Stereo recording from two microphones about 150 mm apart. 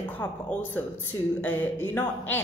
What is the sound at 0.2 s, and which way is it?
A woman's voice, 15° left (ahead or behind).